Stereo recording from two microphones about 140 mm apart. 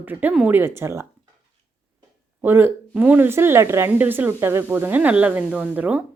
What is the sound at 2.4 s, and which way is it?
A woman's voice, 15° right (ahead or behind).